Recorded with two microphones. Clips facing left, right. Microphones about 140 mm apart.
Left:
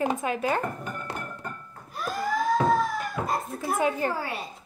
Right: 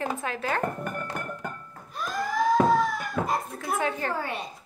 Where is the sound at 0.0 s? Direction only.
15° left (ahead or behind).